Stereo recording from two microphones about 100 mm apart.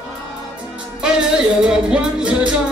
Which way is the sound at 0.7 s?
5° right (ahead or behind).